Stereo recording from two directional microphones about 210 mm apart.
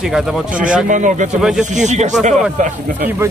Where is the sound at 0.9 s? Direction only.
35° right (ahead or behind).